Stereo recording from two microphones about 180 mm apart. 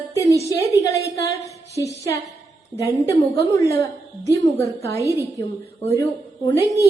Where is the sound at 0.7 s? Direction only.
15° left (ahead or behind).